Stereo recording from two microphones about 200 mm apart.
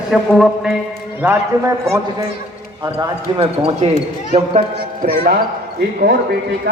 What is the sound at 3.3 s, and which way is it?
Speech, 30° right (ahead or behind).